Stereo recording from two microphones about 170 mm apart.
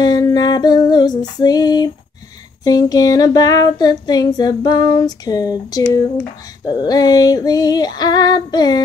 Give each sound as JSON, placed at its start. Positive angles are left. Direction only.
{"t": 0.0, "sound": "music", "side_deg": 25}
{"t": 2.6, "sound": "female singing", "side_deg": 20}